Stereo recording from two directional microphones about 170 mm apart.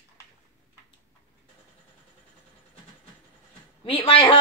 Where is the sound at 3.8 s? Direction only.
30° left (ahead or behind).